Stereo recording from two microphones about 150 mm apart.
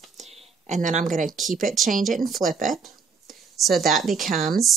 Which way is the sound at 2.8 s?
Centre (ahead or behind).